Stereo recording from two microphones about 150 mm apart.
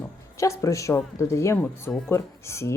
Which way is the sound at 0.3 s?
20° left (ahead or behind).